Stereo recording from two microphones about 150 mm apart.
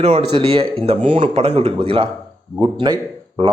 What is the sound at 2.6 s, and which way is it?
Speech, 25° right (ahead or behind).